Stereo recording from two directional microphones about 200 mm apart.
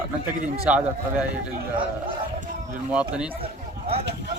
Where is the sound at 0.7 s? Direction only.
5° right (ahead or behind).